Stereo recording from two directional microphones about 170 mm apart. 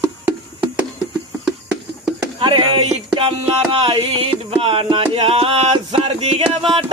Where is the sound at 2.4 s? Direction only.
30° right (ahead or behind).